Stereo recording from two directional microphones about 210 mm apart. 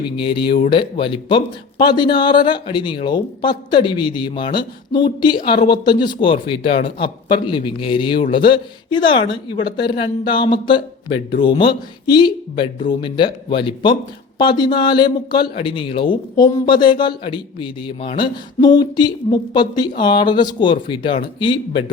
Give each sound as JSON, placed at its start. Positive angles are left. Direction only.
{"t": 0.7, "sound": "speech", "side_deg": 25}